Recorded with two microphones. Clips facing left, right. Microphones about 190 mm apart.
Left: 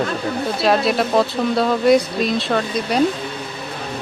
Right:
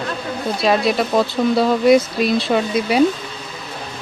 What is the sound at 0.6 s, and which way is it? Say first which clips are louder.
Speech: even; centre (ahead or behind).